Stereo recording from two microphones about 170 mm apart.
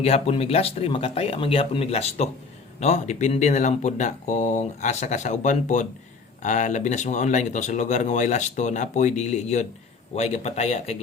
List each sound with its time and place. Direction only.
0.0 s speech: 35° left (ahead or behind)